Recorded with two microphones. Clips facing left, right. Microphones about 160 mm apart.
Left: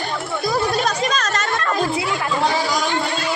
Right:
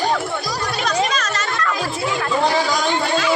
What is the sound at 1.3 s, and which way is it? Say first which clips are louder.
Music: left 1 dB; 45° left (ahead or behind).